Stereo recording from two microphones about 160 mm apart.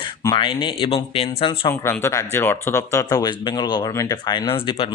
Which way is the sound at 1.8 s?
15° left (ahead or behind).